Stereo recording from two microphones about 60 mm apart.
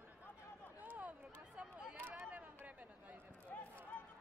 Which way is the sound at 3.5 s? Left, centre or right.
Left.